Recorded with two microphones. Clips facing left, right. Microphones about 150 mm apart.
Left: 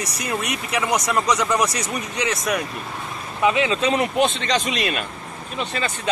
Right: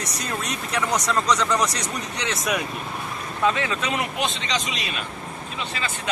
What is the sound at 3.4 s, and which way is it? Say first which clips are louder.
Speech: left 4 dB; 15° left (ahead or behind).